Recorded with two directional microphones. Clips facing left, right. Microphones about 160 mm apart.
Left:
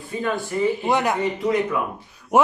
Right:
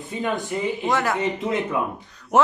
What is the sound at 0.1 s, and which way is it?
Speech, 20° right (ahead or behind).